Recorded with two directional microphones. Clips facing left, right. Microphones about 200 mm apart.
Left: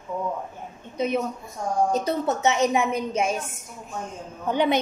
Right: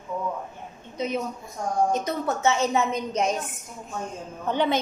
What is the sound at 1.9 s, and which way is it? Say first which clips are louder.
Speech: left 2 dB; 35° left (ahead or behind).